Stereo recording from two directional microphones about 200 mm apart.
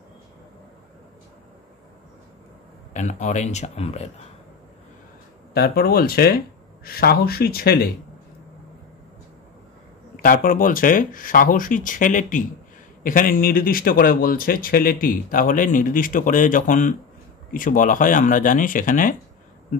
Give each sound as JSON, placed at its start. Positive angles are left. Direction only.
{"t": 2.9, "sound": "speech", "side_deg": 40}
{"t": 5.5, "sound": "speech", "side_deg": 50}
{"t": 10.2, "sound": "speech", "side_deg": 45}